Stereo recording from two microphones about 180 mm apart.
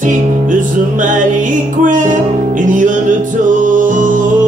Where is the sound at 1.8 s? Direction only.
45° right (ahead or behind).